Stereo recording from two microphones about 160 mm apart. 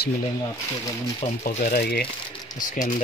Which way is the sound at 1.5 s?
60° left (ahead or behind).